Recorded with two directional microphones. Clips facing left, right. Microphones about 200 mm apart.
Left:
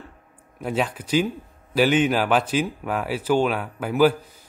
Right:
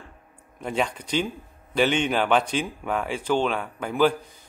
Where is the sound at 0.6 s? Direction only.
5° left (ahead or behind).